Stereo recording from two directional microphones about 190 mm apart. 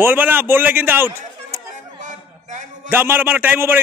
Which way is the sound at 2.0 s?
40° right (ahead or behind).